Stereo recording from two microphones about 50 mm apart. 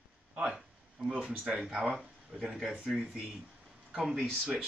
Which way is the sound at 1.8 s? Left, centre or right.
Centre.